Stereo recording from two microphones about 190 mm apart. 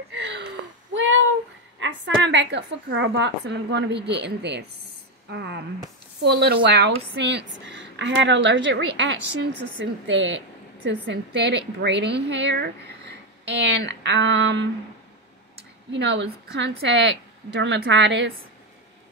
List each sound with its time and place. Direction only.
0.9 s a sound: 85° right
1.8 s a woman's voice: 70° right (ahead or behind)
11.1 s a woman's voice: 65° right (ahead or behind)
15.9 s a woman's voice: 70° right (ahead or behind)